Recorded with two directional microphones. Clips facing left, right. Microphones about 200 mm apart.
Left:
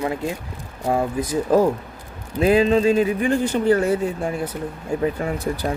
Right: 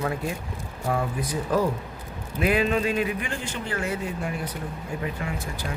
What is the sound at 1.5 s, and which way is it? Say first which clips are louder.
A man's voice: left 7 dB; 30° left (ahead or behind).